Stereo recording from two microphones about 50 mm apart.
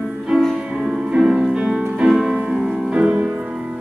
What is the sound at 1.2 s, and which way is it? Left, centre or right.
Music, centre.